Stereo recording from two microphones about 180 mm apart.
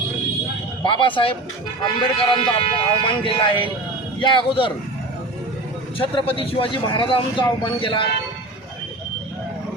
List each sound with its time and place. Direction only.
0.9 s speech: 30° left (ahead or behind)
6.0 s speech: 30° left (ahead or behind)